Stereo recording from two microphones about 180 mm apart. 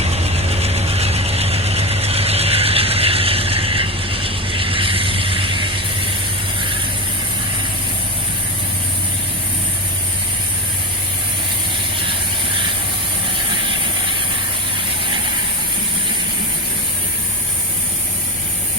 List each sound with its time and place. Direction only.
0.0 s ratchet: 35° right (ahead or behind)